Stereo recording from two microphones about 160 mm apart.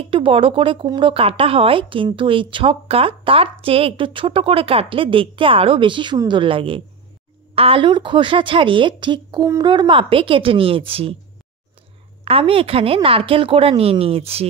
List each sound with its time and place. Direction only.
0.1 s speech: 35° right (ahead or behind)
12.3 s speech: 35° right (ahead or behind)